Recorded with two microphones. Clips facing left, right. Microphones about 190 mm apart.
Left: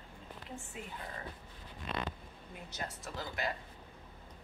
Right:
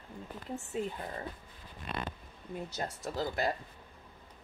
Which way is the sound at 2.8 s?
40° right (ahead or behind).